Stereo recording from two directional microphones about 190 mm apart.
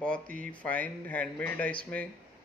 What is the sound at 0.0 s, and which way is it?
Speech, 5° left (ahead or behind).